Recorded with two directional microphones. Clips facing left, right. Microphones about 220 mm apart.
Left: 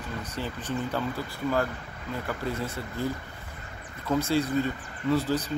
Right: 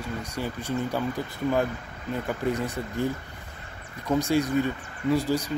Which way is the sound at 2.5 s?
15° right (ahead or behind).